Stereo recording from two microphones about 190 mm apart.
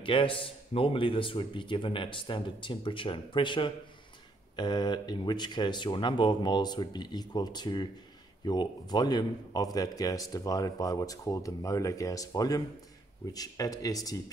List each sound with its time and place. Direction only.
0.0 s a man's voice: 25° left (ahead or behind)